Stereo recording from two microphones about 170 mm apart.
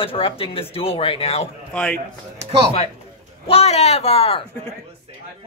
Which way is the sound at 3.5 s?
35° left (ahead or behind).